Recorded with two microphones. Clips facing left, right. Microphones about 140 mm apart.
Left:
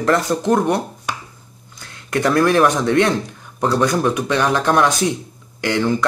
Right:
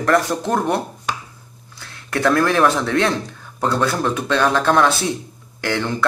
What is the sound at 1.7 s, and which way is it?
Speech, 15° left (ahead or behind).